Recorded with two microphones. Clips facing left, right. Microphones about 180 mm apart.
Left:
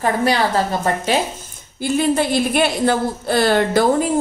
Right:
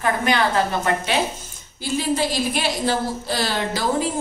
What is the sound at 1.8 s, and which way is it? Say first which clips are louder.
A woman's voice: left 5 dB; 55° left (ahead or behind).